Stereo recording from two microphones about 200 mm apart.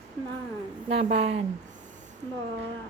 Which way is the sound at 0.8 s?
30° right (ahead or behind).